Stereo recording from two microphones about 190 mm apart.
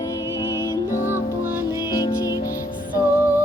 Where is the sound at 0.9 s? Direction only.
15° left (ahead or behind).